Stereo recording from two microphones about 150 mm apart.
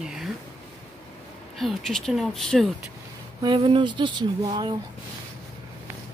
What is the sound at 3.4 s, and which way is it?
Speech, 30° right (ahead or behind).